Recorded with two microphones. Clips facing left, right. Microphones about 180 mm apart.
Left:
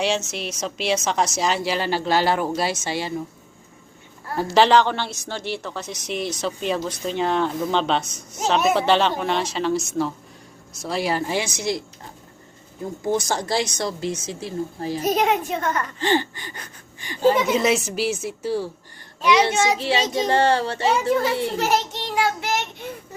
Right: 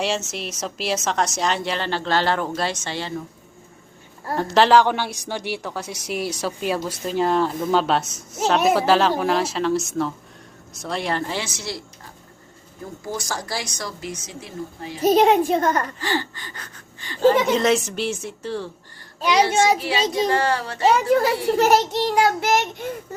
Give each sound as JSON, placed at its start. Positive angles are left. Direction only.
{"t": 0.0, "sound": "a woman's voice", "side_deg": 0}
{"t": 4.4, "sound": "a woman's voice", "side_deg": 0}
{"t": 13.1, "sound": "speech", "side_deg": 25}
{"t": 15.0, "sound": "a child's voice", "side_deg": -30}
{"t": 16.0, "sound": "speech", "side_deg": 20}
{"t": 19.2, "sound": "a child's voice", "side_deg": -35}
{"t": 19.8, "sound": "speech", "side_deg": 30}
{"t": 21.6, "sound": "a child's voice", "side_deg": -40}